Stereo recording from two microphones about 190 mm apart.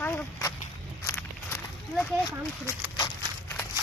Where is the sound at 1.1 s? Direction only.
10° left (ahead or behind).